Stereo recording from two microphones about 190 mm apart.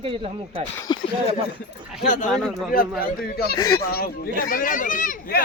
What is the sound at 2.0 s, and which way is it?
Speech, 40° left (ahead or behind).